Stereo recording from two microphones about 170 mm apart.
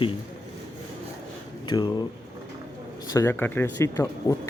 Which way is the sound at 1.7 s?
20° left (ahead or behind).